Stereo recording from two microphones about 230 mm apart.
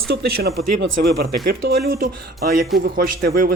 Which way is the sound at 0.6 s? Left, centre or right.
Right.